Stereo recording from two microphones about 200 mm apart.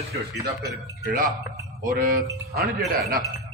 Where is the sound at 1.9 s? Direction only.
45° right (ahead or behind).